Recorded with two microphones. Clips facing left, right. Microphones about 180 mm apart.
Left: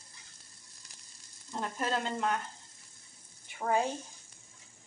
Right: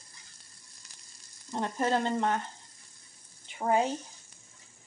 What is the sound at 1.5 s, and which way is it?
Frying, 25° right (ahead or behind).